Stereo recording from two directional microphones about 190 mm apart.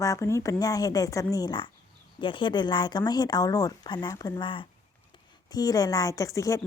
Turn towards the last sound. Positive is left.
turn(degrees=15)  # may be behind; listen again after turning